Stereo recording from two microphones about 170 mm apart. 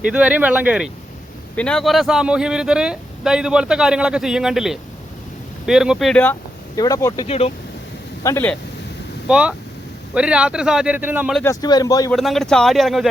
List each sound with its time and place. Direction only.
0.1 s speech: 5° right (ahead or behind)
1.5 s speech: 5° left (ahead or behind)
6.7 s speech: 20° left (ahead or behind)
7.3 s speech: 35° left (ahead or behind)
8.2 s speech: 20° left (ahead or behind)
9.2 s speech: 5° right (ahead or behind)
11.4 s speech: 20° left (ahead or behind)
12.1 s speech: centre (ahead or behind)